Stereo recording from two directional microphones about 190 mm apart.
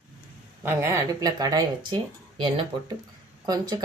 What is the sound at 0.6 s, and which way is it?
Speech, 15° right (ahead or behind).